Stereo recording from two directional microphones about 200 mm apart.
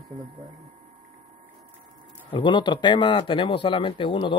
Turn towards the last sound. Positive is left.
turn(degrees=25)  # may be behind; listen again after turning